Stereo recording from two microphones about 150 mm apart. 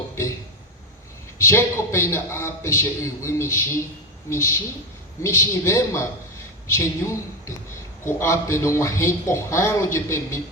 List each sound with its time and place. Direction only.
1.4 s a man's voice: 15° left (ahead or behind)